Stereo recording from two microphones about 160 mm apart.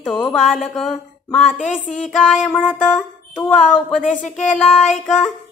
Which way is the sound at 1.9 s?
5° left (ahead or behind).